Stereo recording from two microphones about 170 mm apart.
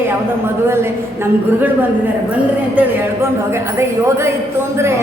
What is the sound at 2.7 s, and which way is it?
Speech, 15° right (ahead or behind).